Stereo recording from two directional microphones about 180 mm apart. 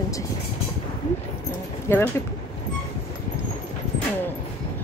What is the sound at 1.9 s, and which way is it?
Speech, 15° left (ahead or behind).